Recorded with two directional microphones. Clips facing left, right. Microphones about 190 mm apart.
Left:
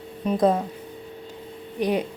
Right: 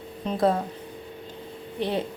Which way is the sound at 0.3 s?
20° left (ahead or behind).